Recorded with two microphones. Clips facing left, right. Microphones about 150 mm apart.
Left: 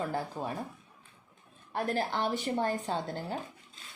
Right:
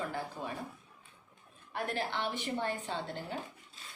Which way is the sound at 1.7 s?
35° left (ahead or behind).